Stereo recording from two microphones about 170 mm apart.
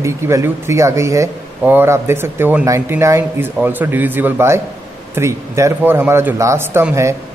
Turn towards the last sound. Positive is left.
turn(degrees=-15)  # may be behind; listen again after turning